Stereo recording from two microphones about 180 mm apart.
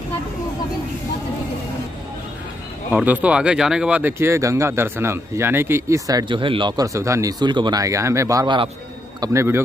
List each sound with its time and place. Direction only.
2.9 s speech: 10° right (ahead or behind)